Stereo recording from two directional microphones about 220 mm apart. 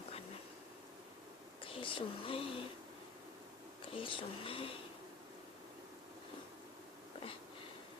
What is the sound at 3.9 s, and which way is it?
Speech, 25° left (ahead or behind).